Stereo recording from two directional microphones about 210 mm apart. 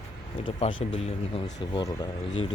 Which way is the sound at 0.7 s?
65° left (ahead or behind).